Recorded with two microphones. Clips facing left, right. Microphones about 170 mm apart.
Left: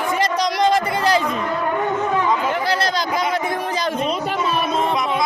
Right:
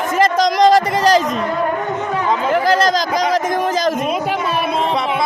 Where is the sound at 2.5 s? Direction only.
45° right (ahead or behind).